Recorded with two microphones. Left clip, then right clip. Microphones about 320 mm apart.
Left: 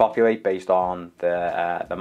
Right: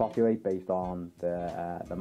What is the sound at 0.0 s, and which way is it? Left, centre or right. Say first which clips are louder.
Speech: left 9 dB; centre.